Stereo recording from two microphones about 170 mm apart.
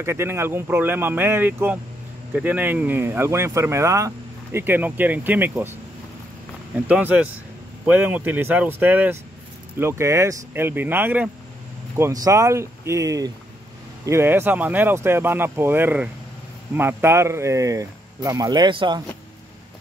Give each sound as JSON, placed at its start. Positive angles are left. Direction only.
{"t": 0.0, "sound": "speech", "side_deg": -15}
{"t": 6.9, "sound": "speech", "side_deg": -10}